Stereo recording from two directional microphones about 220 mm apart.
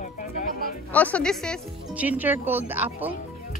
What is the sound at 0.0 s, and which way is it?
Music, 35° left (ahead or behind).